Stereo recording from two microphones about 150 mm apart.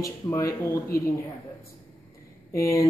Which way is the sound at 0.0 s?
20° left (ahead or behind).